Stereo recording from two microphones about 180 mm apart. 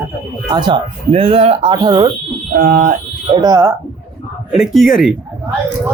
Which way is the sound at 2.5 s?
50° right (ahead or behind).